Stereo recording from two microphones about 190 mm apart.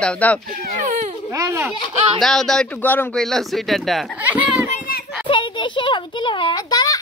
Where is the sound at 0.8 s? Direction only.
40° right (ahead or behind).